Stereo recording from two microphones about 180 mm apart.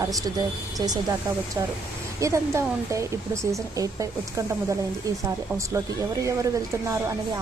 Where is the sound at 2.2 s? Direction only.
15° right (ahead or behind).